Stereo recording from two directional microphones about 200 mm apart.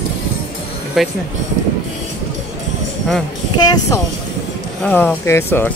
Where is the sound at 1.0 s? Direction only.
Centre (ahead or behind).